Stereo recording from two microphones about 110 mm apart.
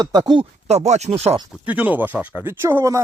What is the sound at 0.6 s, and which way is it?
Speech, 90° right.